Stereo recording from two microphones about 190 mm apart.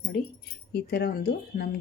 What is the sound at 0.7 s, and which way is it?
Speech, 60° left (ahead or behind).